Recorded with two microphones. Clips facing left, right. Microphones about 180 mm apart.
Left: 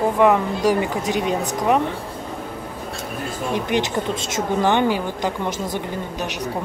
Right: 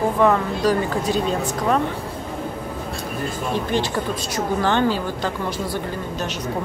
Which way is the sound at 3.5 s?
15° left (ahead or behind).